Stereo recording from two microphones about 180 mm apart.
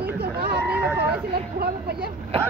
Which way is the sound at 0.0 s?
60° right (ahead or behind).